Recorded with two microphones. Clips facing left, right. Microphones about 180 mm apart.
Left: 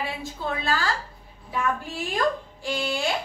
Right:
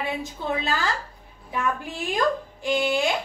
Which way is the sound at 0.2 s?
20° right (ahead or behind).